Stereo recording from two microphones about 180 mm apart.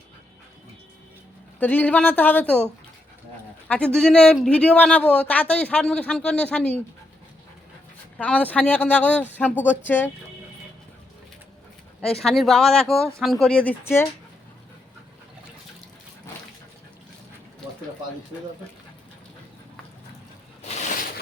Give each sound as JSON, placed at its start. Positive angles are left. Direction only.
{"t": 1.5, "sound": "speech", "side_deg": 10}
{"t": 3.7, "sound": "speech", "side_deg": 5}
{"t": 8.2, "sound": "speech", "side_deg": 10}
{"t": 12.2, "sound": "speech", "side_deg": 0}
{"t": 20.6, "sound": "a sound", "side_deg": 35}